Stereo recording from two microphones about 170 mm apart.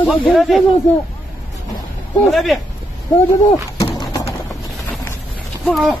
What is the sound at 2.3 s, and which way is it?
Speech, centre (ahead or behind).